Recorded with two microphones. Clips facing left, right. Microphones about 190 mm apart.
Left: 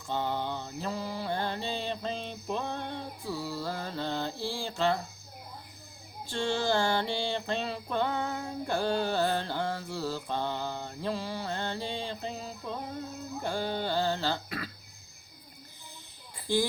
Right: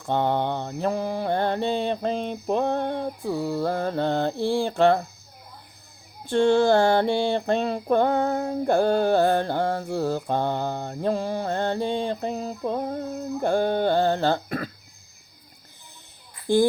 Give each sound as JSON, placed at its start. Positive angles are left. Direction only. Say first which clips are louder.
{"t": 0.0, "sound": "mantra", "louder": "right 9 dB", "side_deg": -60}
{"t": 6.2, "sound": "mantra", "louder": "right 11 dB", "side_deg": -55}
{"t": 13.4, "sound": "music", "louder": "right 10 dB", "side_deg": -55}